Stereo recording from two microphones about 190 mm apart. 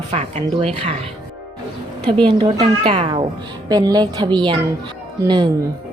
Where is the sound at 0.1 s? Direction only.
35° right (ahead or behind).